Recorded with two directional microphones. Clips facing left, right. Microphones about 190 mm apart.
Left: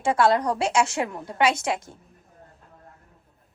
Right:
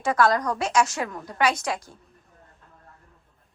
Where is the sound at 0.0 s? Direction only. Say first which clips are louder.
Left 1 dB; 30° left (ahead or behind).